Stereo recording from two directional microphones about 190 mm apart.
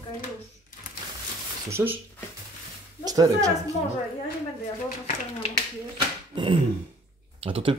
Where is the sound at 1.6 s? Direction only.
15° right (ahead or behind).